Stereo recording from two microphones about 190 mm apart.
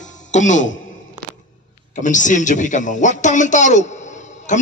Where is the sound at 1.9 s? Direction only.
40° left (ahead or behind).